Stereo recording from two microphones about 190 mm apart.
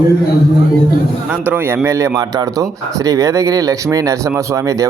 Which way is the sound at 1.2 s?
10° right (ahead or behind).